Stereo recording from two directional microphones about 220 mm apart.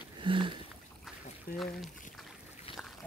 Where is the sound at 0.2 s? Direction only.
20° right (ahead or behind).